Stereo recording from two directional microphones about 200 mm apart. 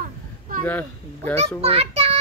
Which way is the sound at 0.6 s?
10° left (ahead or behind).